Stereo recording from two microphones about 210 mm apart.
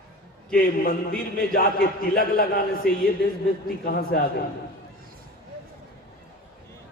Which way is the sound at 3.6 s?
45° left (ahead or behind).